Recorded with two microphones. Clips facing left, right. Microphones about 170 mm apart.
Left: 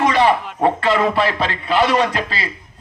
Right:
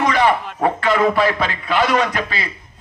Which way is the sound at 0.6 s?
30° left (ahead or behind).